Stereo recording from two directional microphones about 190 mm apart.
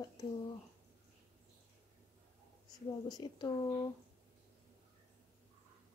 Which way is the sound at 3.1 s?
20° left (ahead or behind).